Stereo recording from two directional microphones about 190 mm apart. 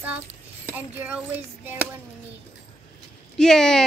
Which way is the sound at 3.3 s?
5° left (ahead or behind).